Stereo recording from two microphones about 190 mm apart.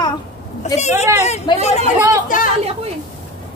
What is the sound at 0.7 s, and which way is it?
Speech, 35° left (ahead or behind).